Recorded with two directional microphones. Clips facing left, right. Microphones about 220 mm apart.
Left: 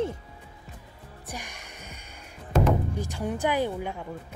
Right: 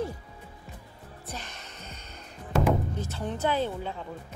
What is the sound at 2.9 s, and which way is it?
Speech, 15° left (ahead or behind).